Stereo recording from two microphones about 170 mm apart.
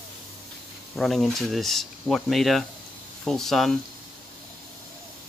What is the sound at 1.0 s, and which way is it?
Speech, centre (ahead or behind).